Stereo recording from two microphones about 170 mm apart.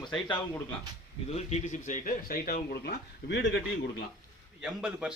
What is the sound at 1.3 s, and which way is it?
Speech, 45° left (ahead or behind).